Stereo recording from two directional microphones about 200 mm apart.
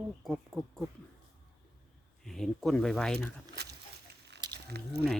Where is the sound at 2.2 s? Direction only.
Centre (ahead or behind).